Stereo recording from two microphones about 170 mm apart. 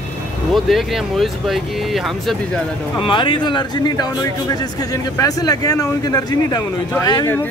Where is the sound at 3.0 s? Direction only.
30° left (ahead or behind).